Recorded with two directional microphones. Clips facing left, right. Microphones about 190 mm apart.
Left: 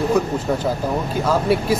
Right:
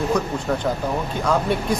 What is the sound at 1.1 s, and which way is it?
Speech, 5° left (ahead or behind).